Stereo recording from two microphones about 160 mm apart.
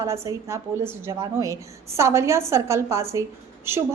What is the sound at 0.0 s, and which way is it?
A woman's voice, 20° right (ahead or behind).